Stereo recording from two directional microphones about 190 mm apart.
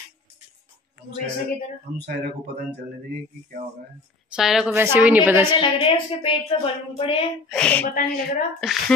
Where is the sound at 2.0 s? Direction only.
50° right (ahead or behind).